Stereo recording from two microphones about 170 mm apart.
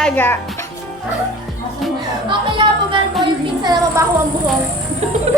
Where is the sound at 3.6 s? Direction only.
20° right (ahead or behind).